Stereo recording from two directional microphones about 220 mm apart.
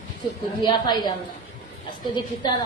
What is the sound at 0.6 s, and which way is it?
Speech, 20° left (ahead or behind).